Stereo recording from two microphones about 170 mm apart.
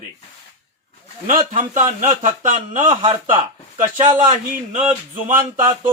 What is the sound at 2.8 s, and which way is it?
Speech, 25° right (ahead or behind).